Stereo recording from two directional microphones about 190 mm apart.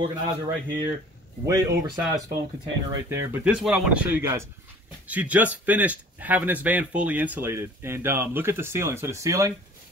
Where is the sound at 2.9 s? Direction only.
15° right (ahead or behind).